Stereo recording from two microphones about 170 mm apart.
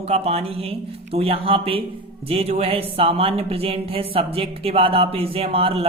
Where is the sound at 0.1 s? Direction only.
35° right (ahead or behind).